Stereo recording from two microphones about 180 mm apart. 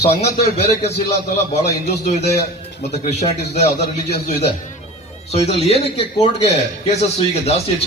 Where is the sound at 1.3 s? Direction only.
40° left (ahead or behind).